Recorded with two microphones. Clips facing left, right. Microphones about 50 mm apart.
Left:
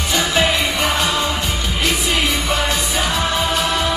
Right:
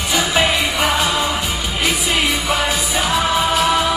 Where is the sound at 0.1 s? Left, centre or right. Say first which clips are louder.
Right 1 dB; centre.